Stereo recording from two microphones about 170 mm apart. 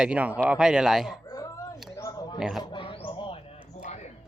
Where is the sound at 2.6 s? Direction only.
30° left (ahead or behind).